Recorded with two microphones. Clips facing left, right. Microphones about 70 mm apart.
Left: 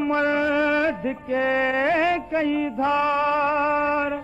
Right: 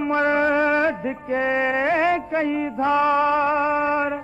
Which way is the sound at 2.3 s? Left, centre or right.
Right.